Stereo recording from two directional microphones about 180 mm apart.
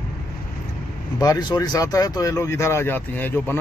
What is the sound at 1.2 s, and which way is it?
Speech, 20° left (ahead or behind).